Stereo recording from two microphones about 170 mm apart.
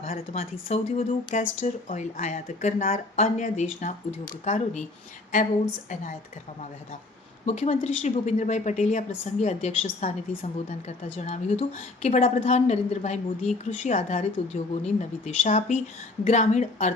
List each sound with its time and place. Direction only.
0.0 s speech: 40° left (ahead or behind)
7.4 s a woman's voice: 40° left (ahead or behind)